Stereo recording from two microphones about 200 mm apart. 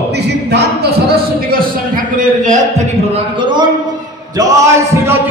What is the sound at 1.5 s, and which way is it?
A man's voice, 45° right (ahead or behind).